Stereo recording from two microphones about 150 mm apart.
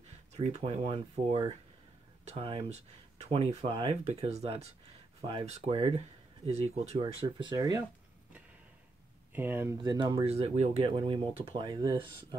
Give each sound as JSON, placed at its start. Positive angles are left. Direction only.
{"t": 0.3, "sound": "speech", "side_deg": -45}
{"t": 7.0, "sound": "speech", "side_deg": -30}
{"t": 9.3, "sound": "speech", "side_deg": -15}
{"t": 9.8, "sound": "speech", "side_deg": -30}
{"t": 10.2, "sound": "speech", "side_deg": -45}